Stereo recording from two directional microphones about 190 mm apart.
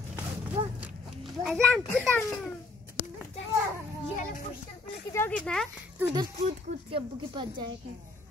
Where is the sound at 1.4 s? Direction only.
5° left (ahead or behind).